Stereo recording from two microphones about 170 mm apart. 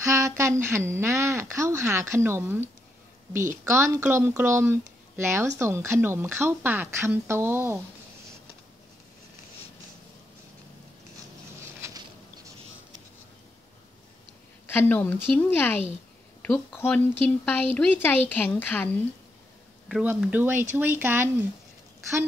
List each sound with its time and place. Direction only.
0.0 s a sound: 15° right (ahead or behind)
3.6 s a woman's voice: 15° right (ahead or behind)
14.7 s a woman's voice: 10° left (ahead or behind)
19.9 s a woman's voice: 5° right (ahead or behind)